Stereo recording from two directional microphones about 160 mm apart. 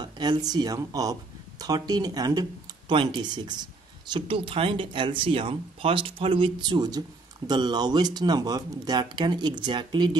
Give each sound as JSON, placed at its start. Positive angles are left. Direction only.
{"t": 0.0, "sound": "speech", "side_deg": -25}